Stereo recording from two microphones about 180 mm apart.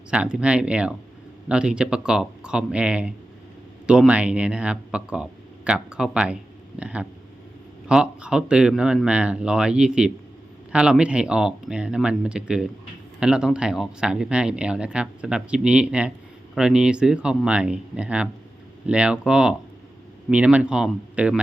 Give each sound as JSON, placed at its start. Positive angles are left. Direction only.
{"t": 0.1, "sound": "speech", "side_deg": -5}